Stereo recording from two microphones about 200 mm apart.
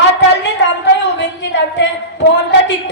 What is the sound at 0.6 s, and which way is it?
A woman's voice, 60° left (ahead or behind).